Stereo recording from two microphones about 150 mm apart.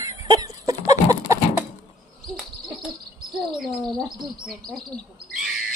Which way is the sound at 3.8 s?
5° left (ahead or behind).